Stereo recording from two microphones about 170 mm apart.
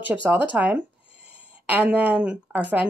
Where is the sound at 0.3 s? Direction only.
10° right (ahead or behind).